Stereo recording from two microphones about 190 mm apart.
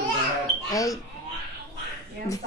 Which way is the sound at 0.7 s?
20° left (ahead or behind).